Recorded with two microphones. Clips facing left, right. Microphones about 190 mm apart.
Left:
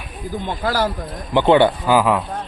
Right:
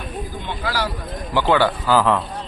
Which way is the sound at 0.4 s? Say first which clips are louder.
Left 5 dB; 45° left (ahead or behind).